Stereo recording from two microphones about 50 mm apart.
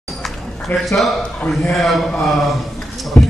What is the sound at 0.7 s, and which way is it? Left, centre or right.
Speech, left.